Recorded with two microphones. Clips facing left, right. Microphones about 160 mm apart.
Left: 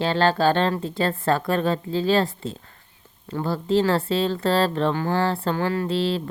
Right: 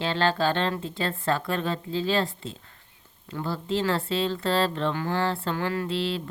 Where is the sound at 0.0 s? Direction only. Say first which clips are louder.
Left 5 dB; 40° left (ahead or behind).